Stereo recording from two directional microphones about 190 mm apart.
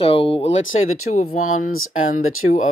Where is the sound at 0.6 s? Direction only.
90° left.